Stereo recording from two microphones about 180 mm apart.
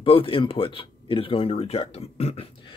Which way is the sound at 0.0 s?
30° left (ahead or behind).